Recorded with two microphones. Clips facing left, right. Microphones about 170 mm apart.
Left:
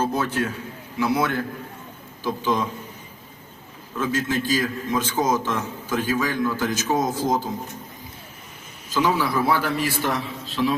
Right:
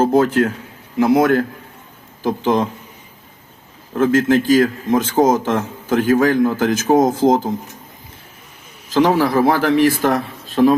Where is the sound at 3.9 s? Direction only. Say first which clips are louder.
Right 10 dB; 55° right (ahead or behind).